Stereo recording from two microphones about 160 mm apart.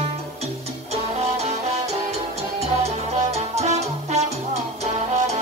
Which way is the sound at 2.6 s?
40° right (ahead or behind).